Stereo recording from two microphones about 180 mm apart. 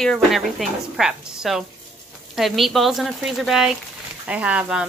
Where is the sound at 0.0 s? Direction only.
Centre (ahead or behind).